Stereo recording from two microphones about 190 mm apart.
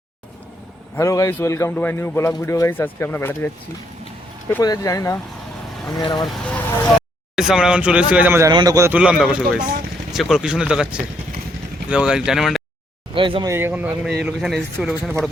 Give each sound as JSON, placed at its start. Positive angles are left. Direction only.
{"t": 0.9, "sound": "a man's voice", "side_deg": 15}
{"t": 6.2, "sound": "a man's voice", "side_deg": 5}
{"t": 13.1, "sound": "speech", "side_deg": -25}
{"t": 13.5, "sound": "a man's voice", "side_deg": -10}